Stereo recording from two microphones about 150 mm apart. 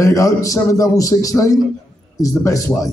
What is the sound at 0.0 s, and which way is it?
Speech, 20° left (ahead or behind).